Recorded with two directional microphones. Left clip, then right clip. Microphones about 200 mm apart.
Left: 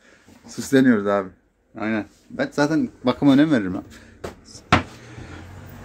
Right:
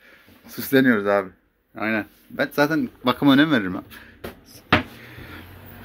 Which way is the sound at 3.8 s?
15° left (ahead or behind).